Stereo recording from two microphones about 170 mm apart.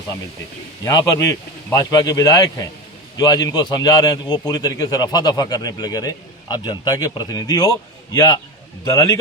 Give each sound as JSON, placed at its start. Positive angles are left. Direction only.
{"t": 0.9, "sound": "a man's voice", "side_deg": 20}